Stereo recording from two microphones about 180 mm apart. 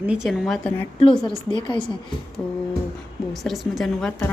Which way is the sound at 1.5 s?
25° left (ahead or behind).